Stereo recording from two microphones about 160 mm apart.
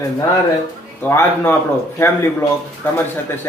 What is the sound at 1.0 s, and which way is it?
Speech, 15° left (ahead or behind).